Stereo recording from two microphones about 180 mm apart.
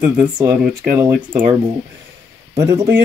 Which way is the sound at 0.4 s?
15° right (ahead or behind).